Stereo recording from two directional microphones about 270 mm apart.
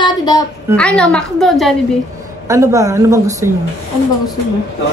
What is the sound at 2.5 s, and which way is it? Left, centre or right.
A woman's voice, centre.